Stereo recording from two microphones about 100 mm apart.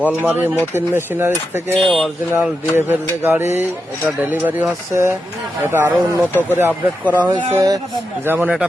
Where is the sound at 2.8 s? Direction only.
20° right (ahead or behind).